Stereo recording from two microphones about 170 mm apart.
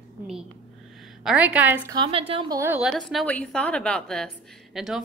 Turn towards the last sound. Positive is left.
turn(degrees=0)  # may be behind; listen again after turning